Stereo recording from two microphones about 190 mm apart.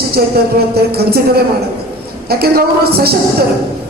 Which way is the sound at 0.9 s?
55° right (ahead or behind).